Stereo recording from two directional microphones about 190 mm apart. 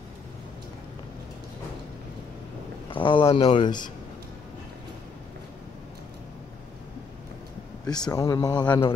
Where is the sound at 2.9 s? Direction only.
25° left (ahead or behind).